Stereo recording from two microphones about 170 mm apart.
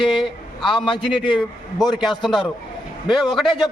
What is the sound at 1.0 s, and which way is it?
A man's voice, centre (ahead or behind).